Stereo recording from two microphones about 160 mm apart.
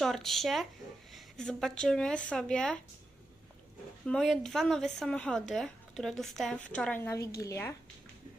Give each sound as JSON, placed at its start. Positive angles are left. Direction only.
{"t": 0.0, "sound": "a woman's voice", "side_deg": 0}
{"t": 4.0, "sound": "a woman's voice", "side_deg": 5}